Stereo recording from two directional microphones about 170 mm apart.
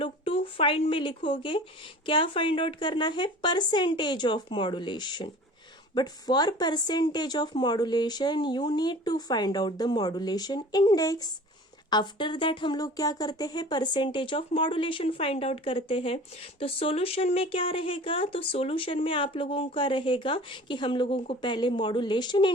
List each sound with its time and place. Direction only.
0.0 s speech: 30° left (ahead or behind)